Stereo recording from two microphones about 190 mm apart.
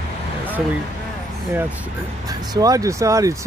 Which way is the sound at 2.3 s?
20° right (ahead or behind).